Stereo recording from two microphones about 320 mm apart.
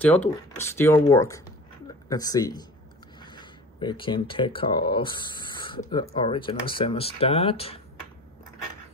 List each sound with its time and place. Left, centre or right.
0.0 s speech: centre
3.2 s a sound: centre
4.6 s speech: centre